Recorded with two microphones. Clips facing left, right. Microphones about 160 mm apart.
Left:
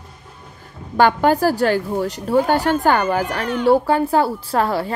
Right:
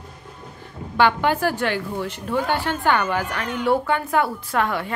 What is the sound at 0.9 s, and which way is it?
A woman's voice, 40° left (ahead or behind).